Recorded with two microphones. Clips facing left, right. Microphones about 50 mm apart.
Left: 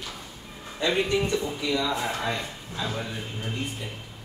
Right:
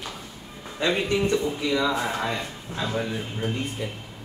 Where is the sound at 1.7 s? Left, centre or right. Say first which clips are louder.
Right 3 dB; centre.